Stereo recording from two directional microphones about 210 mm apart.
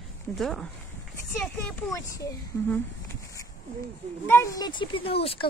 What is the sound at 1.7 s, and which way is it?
Speech, 15° left (ahead or behind).